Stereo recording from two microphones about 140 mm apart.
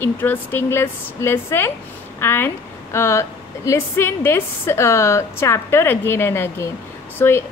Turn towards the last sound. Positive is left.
turn(degrees=20)  # may be behind; listen again after turning